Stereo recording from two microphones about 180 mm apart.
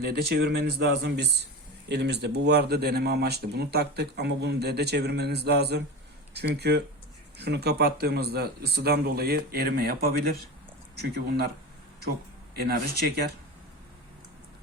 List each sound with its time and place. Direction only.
0.0 s speech: 60° right (ahead or behind)
12.5 s speech: 60° right (ahead or behind)